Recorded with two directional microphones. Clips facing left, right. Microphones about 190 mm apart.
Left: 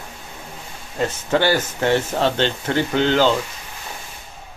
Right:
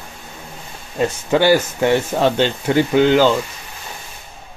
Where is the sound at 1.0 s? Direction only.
15° right (ahead or behind).